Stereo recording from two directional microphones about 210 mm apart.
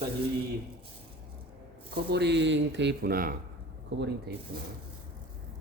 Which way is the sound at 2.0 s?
55° right (ahead or behind).